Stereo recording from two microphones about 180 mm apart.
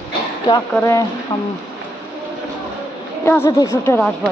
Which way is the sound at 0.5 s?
20° left (ahead or behind).